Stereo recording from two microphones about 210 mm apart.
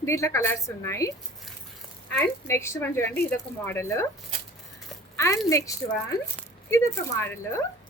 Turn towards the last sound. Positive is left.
turn(degrees=15)  # may be behind; listen again after turning